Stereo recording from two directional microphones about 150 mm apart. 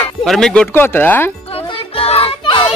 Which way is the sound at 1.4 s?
40° left (ahead or behind).